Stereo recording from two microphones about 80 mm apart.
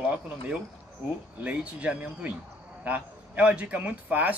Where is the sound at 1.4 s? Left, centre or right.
Centre.